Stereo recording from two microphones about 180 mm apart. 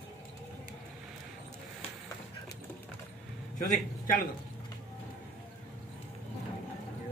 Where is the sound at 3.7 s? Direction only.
50° left (ahead or behind).